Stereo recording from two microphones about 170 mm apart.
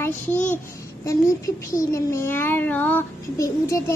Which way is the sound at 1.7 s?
15° left (ahead or behind).